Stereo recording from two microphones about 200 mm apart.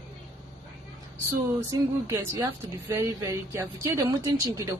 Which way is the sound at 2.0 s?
15° right (ahead or behind).